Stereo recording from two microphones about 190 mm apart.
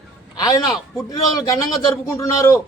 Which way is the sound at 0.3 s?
20° left (ahead or behind).